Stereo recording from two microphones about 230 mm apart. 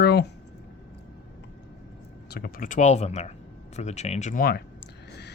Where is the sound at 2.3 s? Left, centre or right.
Left.